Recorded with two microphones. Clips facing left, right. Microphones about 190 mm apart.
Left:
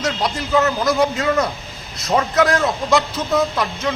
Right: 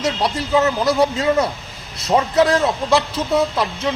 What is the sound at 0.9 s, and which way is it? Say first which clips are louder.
A man's voice: right 1 dB; 30° right (ahead or behind).